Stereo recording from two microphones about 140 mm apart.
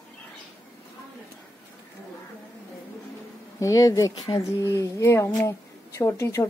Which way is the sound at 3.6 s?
25° left (ahead or behind).